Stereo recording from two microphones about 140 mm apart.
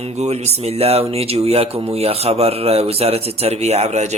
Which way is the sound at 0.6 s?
45° right (ahead or behind).